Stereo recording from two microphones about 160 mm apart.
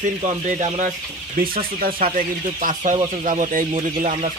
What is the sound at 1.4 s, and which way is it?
Speech, 65° right (ahead or behind).